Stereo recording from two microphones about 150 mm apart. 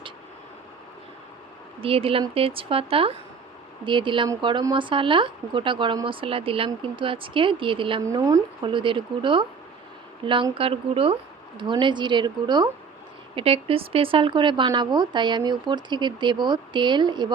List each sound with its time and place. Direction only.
1.8 s speech: 40° right (ahead or behind)
8.0 s speech: 20° right (ahead or behind)
8.6 s speech: 35° right (ahead or behind)
13.3 s speech: 40° right (ahead or behind)